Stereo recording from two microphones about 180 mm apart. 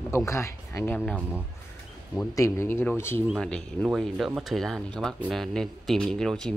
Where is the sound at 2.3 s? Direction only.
15° left (ahead or behind).